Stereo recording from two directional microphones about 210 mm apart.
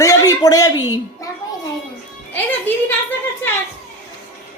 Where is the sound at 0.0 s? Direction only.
15° left (ahead or behind).